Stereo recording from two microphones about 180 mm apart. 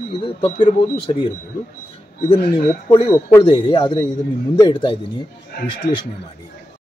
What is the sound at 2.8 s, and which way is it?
Speech, 25° left (ahead or behind).